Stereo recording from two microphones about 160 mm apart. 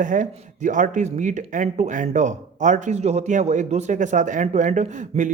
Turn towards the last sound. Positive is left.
turn(degrees=-50)  # may be behind; listen again after turning